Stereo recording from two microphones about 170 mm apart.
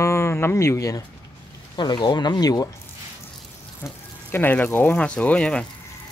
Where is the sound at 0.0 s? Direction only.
15° left (ahead or behind).